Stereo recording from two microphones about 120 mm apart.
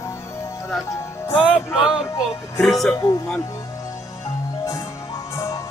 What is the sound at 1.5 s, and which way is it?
Music, 5° right (ahead or behind).